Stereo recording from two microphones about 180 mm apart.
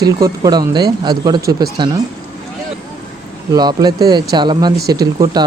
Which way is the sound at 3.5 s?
20° right (ahead or behind).